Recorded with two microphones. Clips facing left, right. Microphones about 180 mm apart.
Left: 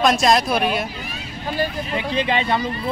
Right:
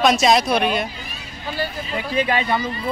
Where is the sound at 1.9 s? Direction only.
20° left (ahead or behind).